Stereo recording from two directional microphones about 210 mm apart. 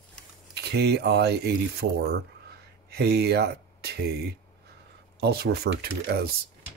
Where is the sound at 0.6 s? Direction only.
50° right (ahead or behind).